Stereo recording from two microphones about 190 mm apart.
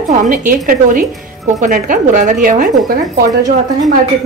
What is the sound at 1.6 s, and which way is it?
A woman's voice, 45° right (ahead or behind).